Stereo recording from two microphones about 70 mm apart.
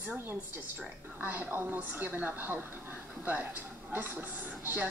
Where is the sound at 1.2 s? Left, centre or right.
Right.